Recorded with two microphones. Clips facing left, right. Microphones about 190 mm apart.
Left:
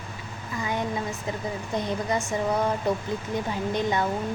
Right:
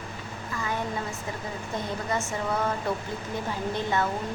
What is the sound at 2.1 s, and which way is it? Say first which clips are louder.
Speech: left 3 dB; 15° left (ahead or behind).